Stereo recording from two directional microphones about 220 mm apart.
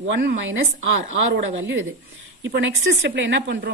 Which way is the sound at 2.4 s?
55° right (ahead or behind).